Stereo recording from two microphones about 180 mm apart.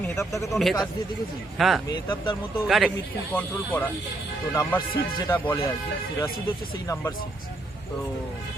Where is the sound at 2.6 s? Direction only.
Centre (ahead or behind).